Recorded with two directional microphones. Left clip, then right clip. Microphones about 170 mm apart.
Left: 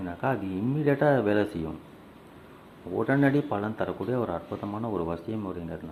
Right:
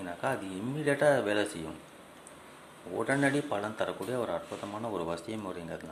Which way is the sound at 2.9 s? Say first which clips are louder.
Left 4 dB; 10° left (ahead or behind).